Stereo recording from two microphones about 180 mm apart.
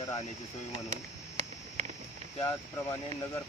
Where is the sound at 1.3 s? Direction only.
40° right (ahead or behind).